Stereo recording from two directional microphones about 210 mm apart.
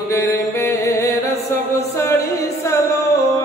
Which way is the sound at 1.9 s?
15° left (ahead or behind).